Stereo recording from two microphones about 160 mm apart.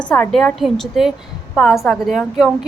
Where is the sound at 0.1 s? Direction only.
5° left (ahead or behind).